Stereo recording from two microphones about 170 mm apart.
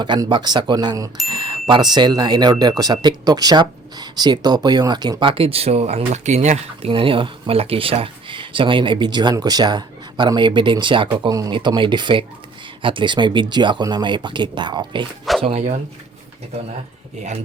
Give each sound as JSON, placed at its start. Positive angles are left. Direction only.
{"t": 0.0, "sound": "speech", "side_deg": -25}